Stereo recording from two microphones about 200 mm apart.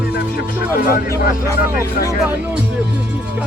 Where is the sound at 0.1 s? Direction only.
60° left (ahead or behind).